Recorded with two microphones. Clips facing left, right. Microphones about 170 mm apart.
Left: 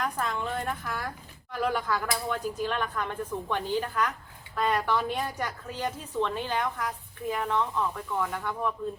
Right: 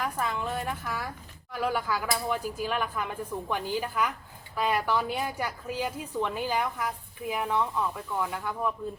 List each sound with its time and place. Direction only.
0.0 s a woman's voice: 5° right (ahead or behind)